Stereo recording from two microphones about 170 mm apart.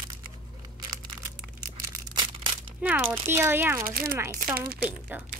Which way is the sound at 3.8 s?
60° right (ahead or behind).